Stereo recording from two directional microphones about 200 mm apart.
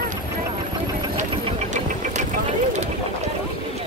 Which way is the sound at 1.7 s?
35° right (ahead or behind).